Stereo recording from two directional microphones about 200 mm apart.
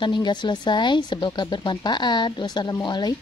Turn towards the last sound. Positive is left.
turn(degrees=20)  # may be behind; listen again after turning